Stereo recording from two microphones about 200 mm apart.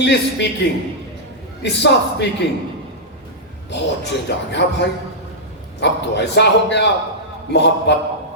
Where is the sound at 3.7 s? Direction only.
60° left (ahead or behind).